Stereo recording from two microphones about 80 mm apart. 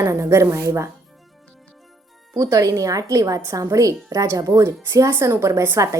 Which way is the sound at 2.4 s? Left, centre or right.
Right.